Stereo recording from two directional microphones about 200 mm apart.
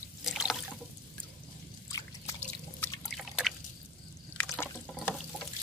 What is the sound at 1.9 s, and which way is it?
Drip, 15° left (ahead or behind).